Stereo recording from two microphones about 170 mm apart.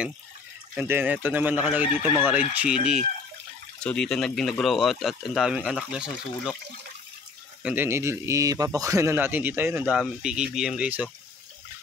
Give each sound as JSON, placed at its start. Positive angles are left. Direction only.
{"t": 0.7, "sound": "a man's voice", "side_deg": -10}
{"t": 7.6, "sound": "a man's voice", "side_deg": -10}